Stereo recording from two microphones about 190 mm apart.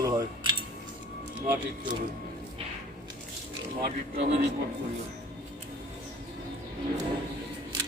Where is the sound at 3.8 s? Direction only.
55° right (ahead or behind).